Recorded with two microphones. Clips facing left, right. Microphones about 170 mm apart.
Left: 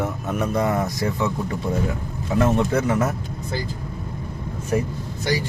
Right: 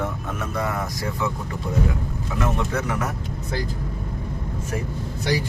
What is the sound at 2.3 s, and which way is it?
Speech, 25° left (ahead or behind).